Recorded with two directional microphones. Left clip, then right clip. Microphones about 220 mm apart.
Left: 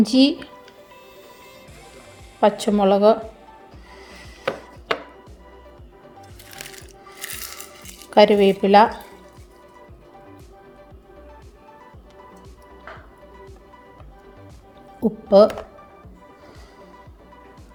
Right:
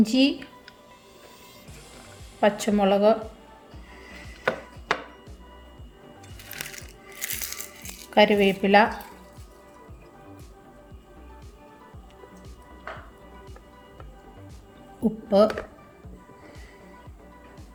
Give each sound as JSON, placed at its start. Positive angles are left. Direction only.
{"t": 0.0, "sound": "speech", "side_deg": 25}
{"t": 2.4, "sound": "speech", "side_deg": 20}
{"t": 3.9, "sound": "music", "side_deg": 25}
{"t": 7.2, "sound": "music", "side_deg": 5}
{"t": 8.1, "sound": "speech", "side_deg": 25}
{"t": 15.0, "sound": "music", "side_deg": 20}